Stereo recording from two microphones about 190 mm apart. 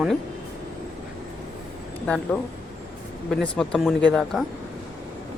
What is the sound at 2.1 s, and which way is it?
Speech, 5° left (ahead or behind).